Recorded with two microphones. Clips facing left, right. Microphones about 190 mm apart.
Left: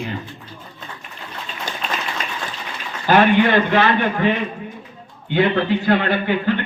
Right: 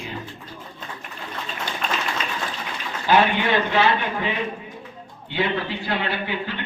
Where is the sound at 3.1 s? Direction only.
55° left (ahead or behind).